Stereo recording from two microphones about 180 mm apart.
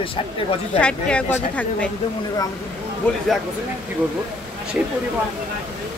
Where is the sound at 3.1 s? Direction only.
5° left (ahead or behind).